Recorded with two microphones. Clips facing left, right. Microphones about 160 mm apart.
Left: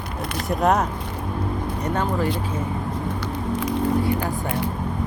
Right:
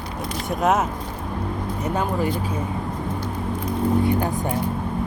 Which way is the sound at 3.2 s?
80° left.